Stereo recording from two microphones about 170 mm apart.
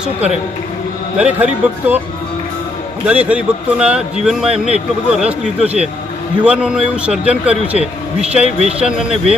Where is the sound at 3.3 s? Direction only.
5° right (ahead or behind).